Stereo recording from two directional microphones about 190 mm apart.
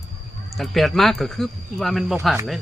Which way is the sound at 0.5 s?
Centre (ahead or behind).